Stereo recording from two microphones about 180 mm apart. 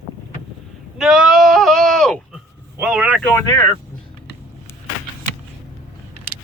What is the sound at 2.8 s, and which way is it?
Speech, 10° right (ahead or behind).